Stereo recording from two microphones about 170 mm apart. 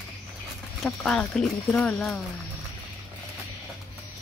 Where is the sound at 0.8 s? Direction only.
5° left (ahead or behind).